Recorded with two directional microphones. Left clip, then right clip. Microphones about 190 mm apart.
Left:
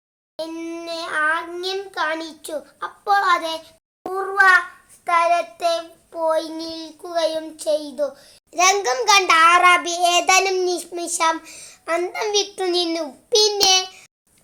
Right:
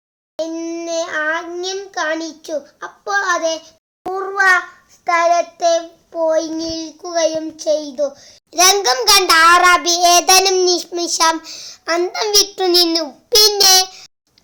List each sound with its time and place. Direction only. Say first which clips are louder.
0.3 s a sound: right 6 dB; 20° right (ahead or behind)
2.2 s child singing: right 6 dB; 25° right (ahead or behind)
4.1 s gargling: right 1 dB; 25° right (ahead or behind)
5.0 s child singing: right 4 dB; 25° right (ahead or behind)
8.5 s child singing: right 4 dB; 20° right (ahead or behind)